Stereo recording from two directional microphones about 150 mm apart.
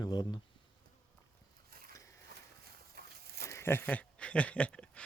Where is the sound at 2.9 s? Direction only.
90° right.